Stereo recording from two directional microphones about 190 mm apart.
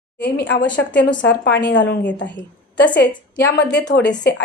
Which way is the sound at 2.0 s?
10° left (ahead or behind).